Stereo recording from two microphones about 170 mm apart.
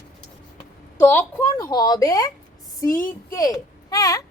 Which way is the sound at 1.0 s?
15° left (ahead or behind).